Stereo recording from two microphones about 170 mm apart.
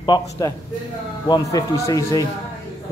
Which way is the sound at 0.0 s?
25° left (ahead or behind).